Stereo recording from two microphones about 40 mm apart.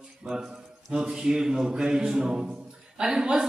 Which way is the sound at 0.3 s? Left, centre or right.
Centre.